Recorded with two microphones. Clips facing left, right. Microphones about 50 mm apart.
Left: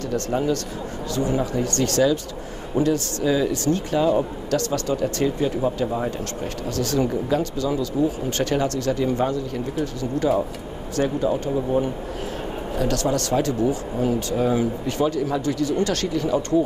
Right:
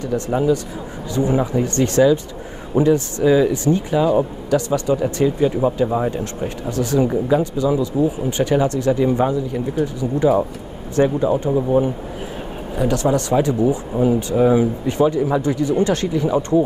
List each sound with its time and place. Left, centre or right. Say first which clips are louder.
0.1 s speech: right 5 dB; centre